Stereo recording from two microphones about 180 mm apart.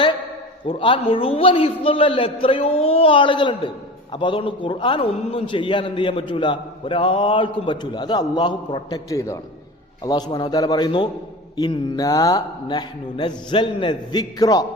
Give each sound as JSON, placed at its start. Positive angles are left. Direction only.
{"t": 0.6, "sound": "a man's voice", "side_deg": 30}